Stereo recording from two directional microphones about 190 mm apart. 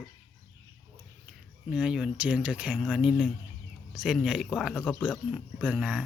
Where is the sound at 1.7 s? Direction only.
5° right (ahead or behind).